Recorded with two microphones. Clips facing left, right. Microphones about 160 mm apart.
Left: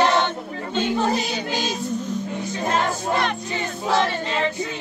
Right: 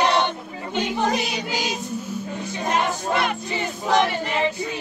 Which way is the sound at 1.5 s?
15° right (ahead or behind).